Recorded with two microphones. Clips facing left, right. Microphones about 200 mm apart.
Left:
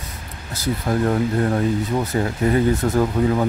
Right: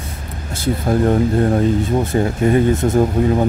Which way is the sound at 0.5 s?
25° right (ahead or behind).